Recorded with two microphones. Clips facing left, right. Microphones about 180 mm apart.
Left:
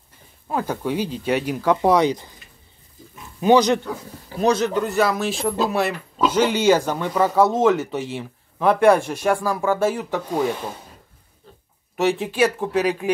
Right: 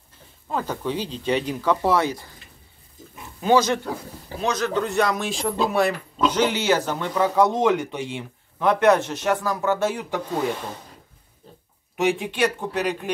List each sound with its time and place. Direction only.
0.5 s speech: 10° left (ahead or behind)
3.3 s speech: 20° left (ahead or behind)
4.7 s speech: 5° left (ahead or behind)
12.0 s speech: centre (ahead or behind)